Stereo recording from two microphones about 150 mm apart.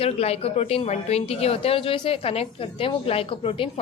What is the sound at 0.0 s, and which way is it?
Speech, 40° left (ahead or behind).